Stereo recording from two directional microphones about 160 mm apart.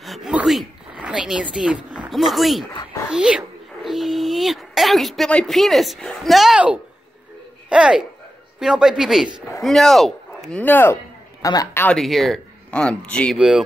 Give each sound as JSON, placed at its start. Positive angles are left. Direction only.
{"t": 0.0, "sound": "zipper", "side_deg": 0}
{"t": 1.9, "sound": "speech", "side_deg": -5}
{"t": 3.1, "sound": "a sound", "side_deg": -5}
{"t": 7.7, "sound": "speech", "side_deg": -5}
{"t": 12.0, "sound": "speech", "side_deg": 0}
{"t": 13.4, "sound": "speech", "side_deg": -5}